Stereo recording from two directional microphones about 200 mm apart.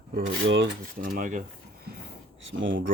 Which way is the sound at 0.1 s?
60° right (ahead or behind).